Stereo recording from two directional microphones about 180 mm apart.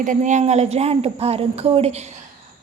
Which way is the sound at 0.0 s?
45° right (ahead or behind).